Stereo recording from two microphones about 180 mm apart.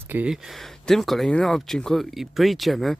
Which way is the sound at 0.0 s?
10° right (ahead or behind).